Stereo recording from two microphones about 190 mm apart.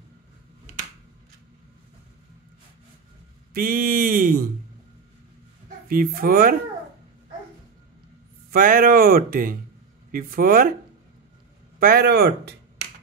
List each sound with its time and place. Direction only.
3.5 s speech: 50° right (ahead or behind)
5.9 s speech: 50° right (ahead or behind)
8.5 s speech: 50° right (ahead or behind)
11.8 s speech: 55° right (ahead or behind)